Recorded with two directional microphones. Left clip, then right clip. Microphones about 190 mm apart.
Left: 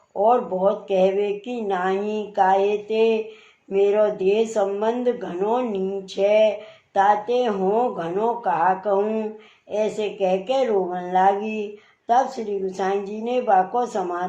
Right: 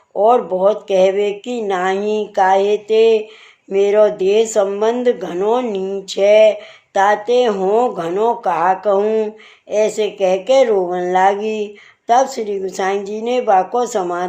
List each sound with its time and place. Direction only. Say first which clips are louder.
0.2 s speech: right 6 dB; 45° right (ahead or behind)